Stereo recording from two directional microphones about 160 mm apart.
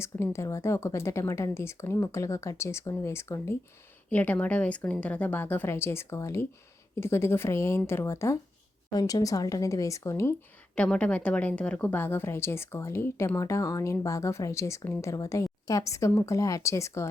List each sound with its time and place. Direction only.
0.0 s a woman's voice: 15° left (ahead or behind)
10.8 s a woman's voice: 5° left (ahead or behind)